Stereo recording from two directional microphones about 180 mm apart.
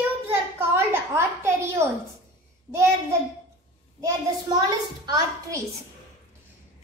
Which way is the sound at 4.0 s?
20° right (ahead or behind).